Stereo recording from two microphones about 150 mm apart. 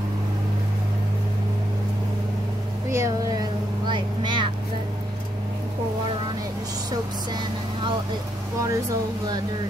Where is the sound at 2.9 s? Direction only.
20° right (ahead or behind).